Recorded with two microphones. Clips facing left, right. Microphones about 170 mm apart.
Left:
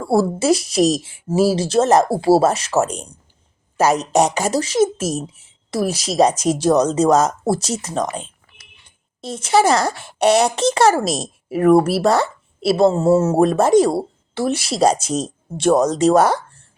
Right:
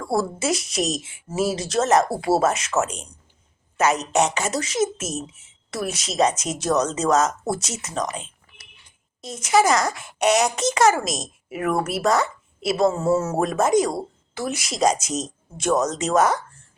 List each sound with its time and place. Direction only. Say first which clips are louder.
0.0 s a woman's voice: left 6 dB; 30° left (ahead or behind)